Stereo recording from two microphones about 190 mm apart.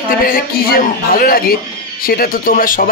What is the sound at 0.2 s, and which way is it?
A man's voice, 50° left (ahead or behind).